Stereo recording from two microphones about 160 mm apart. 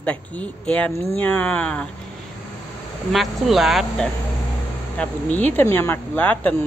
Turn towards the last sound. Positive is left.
turn(degrees=10)  # may be behind; listen again after turning